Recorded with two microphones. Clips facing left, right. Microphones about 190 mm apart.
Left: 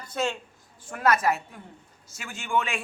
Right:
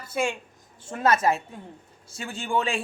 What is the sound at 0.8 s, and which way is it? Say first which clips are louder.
A woman's voice: right 1 dB; 25° right (ahead or behind).